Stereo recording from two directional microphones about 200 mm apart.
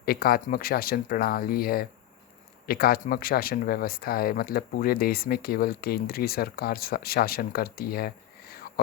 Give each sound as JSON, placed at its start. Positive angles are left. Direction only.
{"t": 0.0, "sound": "speech", "side_deg": 50}